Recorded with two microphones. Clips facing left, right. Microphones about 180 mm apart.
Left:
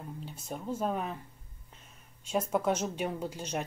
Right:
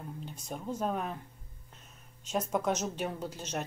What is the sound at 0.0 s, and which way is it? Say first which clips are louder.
Speech: even; 5° left (ahead or behind).